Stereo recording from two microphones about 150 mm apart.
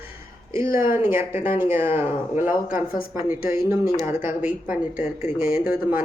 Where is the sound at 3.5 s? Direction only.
20° right (ahead or behind).